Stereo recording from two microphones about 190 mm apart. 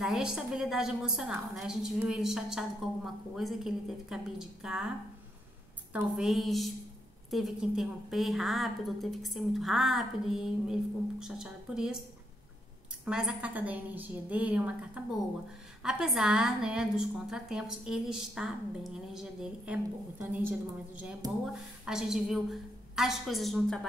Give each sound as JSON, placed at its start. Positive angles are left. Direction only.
{"t": 0.0, "sound": "a woman's voice", "side_deg": -5}
{"t": 5.9, "sound": "a woman's voice", "side_deg": 0}
{"t": 13.0, "sound": "a woman's voice", "side_deg": -5}
{"t": 21.2, "sound": "speech", "side_deg": -20}
{"t": 21.8, "sound": "a woman's voice", "side_deg": 0}